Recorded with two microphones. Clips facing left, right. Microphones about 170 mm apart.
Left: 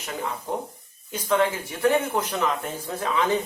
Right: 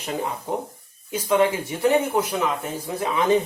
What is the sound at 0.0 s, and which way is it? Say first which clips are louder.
Speech: right 4 dB; 25° right (ahead or behind).